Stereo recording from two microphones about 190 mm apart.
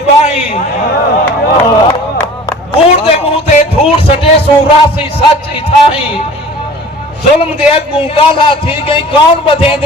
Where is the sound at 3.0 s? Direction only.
30° left (ahead or behind).